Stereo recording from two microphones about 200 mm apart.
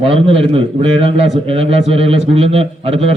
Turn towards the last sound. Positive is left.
turn(degrees=-30)  # may be behind; listen again after turning